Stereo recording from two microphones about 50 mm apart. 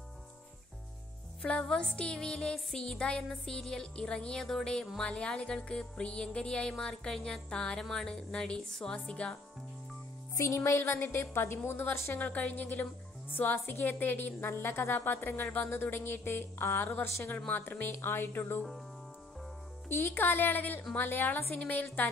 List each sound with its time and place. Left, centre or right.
1.4 s music: centre
10.4 s speech: left
11.0 s speech: left
12.2 s a woman's voice: left
14.5 s speech: left
19.9 s speech: left